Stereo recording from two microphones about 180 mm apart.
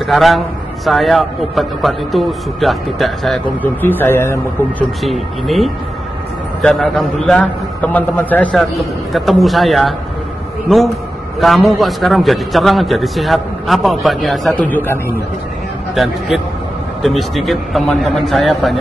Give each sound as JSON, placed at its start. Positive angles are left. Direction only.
{"t": 0.0, "sound": "a man's voice", "side_deg": 0}
{"t": 5.0, "sound": "a man's voice", "side_deg": 0}
{"t": 15.9, "sound": "a man's voice", "side_deg": 0}